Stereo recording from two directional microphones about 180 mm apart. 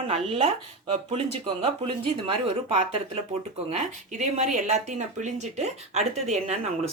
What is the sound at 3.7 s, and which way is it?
Speech, 40° right (ahead or behind).